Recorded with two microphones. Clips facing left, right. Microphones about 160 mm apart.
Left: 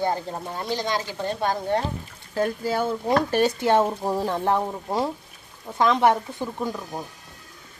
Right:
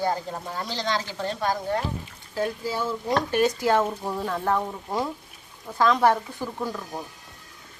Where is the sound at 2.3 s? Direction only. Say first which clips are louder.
Left 3 dB; 50° left (ahead or behind).